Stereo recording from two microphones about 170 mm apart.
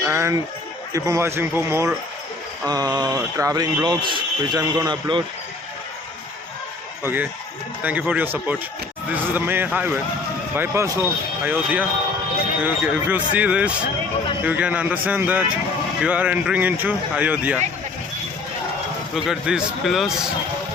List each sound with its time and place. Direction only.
0.0 s speech: 15° right (ahead or behind)
7.0 s speech: 10° right (ahead or behind)
19.1 s speech: 5° right (ahead or behind)